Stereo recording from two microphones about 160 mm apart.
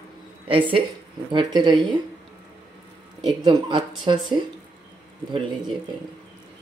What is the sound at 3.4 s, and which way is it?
Speech, 30° right (ahead or behind).